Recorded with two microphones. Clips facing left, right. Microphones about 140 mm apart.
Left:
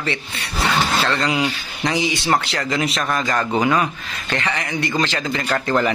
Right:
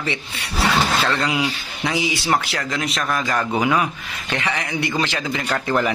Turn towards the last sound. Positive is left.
turn(degrees=-10)  # may be behind; listen again after turning